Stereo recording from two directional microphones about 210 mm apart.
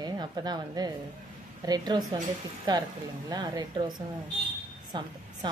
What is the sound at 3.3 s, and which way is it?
A woman's voice, 20° right (ahead or behind).